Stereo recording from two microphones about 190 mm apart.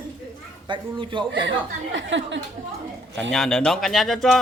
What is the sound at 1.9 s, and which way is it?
Speech, 70° right (ahead or behind).